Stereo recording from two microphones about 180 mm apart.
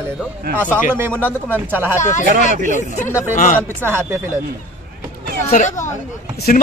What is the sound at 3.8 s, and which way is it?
Speech, 15° right (ahead or behind).